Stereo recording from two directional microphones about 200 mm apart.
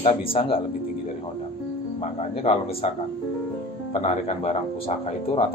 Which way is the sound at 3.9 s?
35° left (ahead or behind).